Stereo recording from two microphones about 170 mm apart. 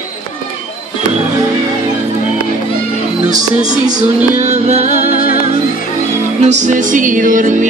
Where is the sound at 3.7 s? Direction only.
45° right (ahead or behind).